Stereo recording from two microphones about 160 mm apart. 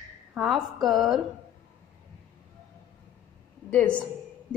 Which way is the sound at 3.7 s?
10° left (ahead or behind).